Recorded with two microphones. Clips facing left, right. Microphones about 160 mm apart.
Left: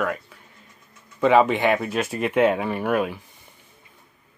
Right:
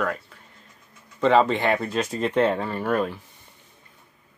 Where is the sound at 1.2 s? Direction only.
10° left (ahead or behind).